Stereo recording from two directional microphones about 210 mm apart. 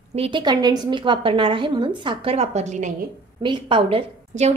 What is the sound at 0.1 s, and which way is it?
A woman's voice, 25° right (ahead or behind).